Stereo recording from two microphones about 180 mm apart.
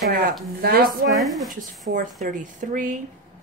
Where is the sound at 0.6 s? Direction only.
55° right (ahead or behind).